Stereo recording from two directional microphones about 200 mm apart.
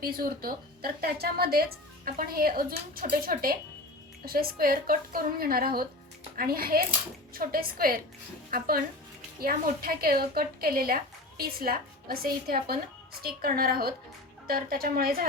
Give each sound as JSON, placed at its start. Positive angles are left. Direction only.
{"t": 0.0, "sound": "a woman's voice", "side_deg": -50}